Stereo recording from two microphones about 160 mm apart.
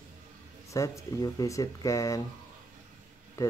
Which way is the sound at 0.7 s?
20° left (ahead or behind).